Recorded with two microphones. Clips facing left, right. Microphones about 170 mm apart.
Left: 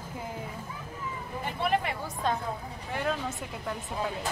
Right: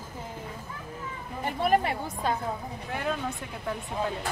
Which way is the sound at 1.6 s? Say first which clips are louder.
Right 4 dB; 40° right (ahead or behind).